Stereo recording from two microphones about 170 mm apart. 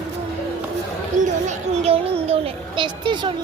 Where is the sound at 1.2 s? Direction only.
40° right (ahead or behind).